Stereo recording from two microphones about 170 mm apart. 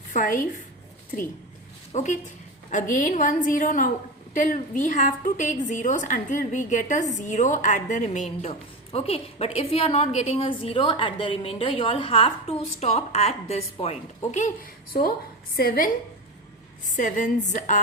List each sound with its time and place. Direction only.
0.1 s a woman's voice: 50° left (ahead or behind)
1.9 s a woman's voice: 40° left (ahead or behind); by 15.9 s 65° left (ahead or behind)
17.0 s a woman's voice: 50° left (ahead or behind)